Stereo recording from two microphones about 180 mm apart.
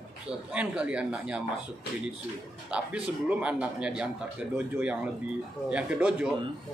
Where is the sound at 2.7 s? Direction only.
5° right (ahead or behind).